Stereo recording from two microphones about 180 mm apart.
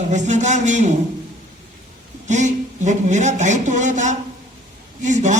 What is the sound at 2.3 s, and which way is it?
A man's voice, 40° right (ahead or behind).